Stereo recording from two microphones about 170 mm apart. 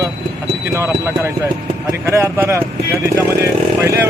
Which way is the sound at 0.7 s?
15° right (ahead or behind).